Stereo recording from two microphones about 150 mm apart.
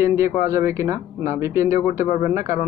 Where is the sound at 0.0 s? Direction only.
15° right (ahead or behind).